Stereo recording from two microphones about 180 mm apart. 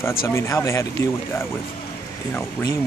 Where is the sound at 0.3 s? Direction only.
15° left (ahead or behind).